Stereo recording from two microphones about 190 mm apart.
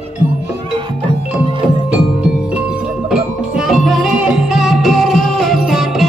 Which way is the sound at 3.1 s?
Centre (ahead or behind).